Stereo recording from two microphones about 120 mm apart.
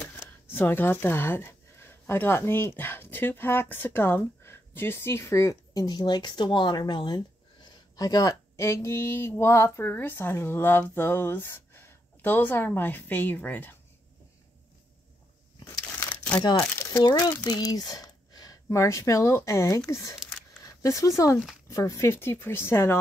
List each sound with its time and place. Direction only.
0.5 s a woman's voice: 15° left (ahead or behind)
16.1 s crumpling: 15° left (ahead or behind)
17.0 s speech: 35° left (ahead or behind)
20.2 s a sound: centre (ahead or behind)
20.6 s speech: 25° left (ahead or behind)